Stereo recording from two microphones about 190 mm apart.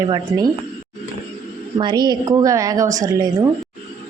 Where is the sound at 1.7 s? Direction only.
25° right (ahead or behind).